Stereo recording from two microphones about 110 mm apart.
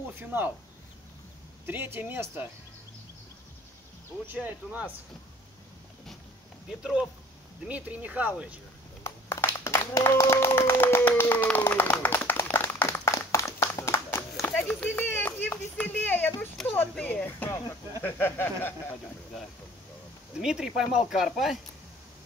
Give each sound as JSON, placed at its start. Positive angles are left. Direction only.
{"t": 0.1, "sound": "speech", "side_deg": -20}
{"t": 1.7, "sound": "speech", "side_deg": -20}
{"t": 4.3, "sound": "speech", "side_deg": -15}
{"t": 6.8, "sound": "speech", "side_deg": -5}
{"t": 9.0, "sound": "clapping", "side_deg": 25}
{"t": 14.7, "sound": "a sound", "side_deg": 15}
{"t": 18.0, "sound": "speech", "side_deg": 20}
{"t": 20.3, "sound": "speech", "side_deg": -5}